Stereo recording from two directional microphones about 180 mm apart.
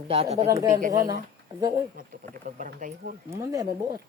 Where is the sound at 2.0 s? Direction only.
50° right (ahead or behind).